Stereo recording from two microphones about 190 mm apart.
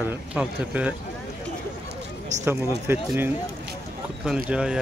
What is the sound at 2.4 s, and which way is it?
Speech, 10° right (ahead or behind).